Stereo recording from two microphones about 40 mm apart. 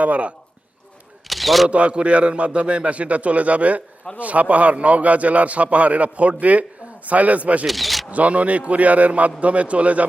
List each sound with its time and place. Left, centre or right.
0.0 s a man's voice: right
1.3 s single-lens reflex camera: centre
1.7 s a man's voice: right
7.7 s speech: centre
8.1 s a man's voice: right